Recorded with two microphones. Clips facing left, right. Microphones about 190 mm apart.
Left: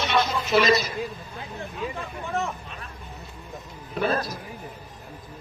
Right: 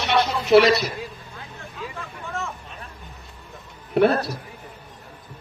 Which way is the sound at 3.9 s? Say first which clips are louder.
Right 7 dB; 65° right (ahead or behind).